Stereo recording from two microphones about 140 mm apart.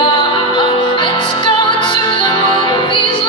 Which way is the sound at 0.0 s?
35° left (ahead or behind).